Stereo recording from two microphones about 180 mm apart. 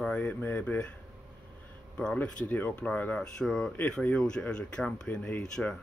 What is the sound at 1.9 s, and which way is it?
Speech, 5° left (ahead or behind).